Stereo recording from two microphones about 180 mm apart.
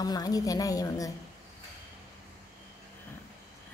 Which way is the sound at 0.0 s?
20° left (ahead or behind).